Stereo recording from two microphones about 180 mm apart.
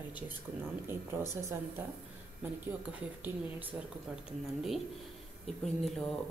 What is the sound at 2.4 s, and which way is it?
A woman's voice, 10° right (ahead or behind).